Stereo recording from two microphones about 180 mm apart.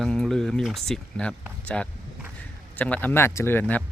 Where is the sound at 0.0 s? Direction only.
Centre (ahead or behind).